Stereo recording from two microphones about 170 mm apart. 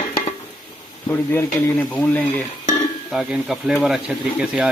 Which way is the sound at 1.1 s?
10° left (ahead or behind).